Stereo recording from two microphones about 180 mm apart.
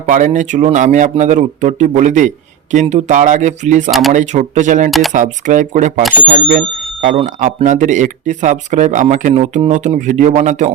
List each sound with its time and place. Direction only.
0.0 s speech: 45° right (ahead or behind)
4.9 s speech: centre (ahead or behind)
5.1 s speech: 45° right (ahead or behind)
7.0 s speech: 40° right (ahead or behind)